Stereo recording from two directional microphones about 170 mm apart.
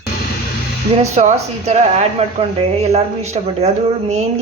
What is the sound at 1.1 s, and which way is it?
Speech, 40° right (ahead or behind).